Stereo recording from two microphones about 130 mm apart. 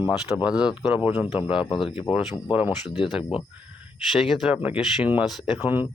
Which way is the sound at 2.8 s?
35° left (ahead or behind).